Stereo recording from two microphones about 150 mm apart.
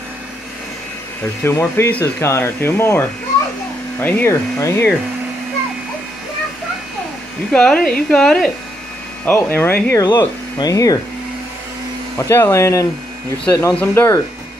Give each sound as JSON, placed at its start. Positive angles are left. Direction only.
{"t": 1.4, "sound": "speech", "side_deg": 15}
{"t": 4.0, "sound": "speech", "side_deg": 10}
{"t": 7.5, "sound": "a woman's voice", "side_deg": 5}
{"t": 10.0, "sound": "speech", "side_deg": 25}
{"t": 12.2, "sound": "speech", "side_deg": 15}